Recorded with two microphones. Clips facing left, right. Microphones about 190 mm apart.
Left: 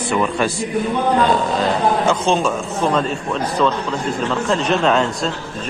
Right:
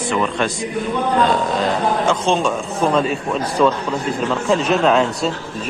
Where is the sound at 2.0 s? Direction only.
Centre (ahead or behind).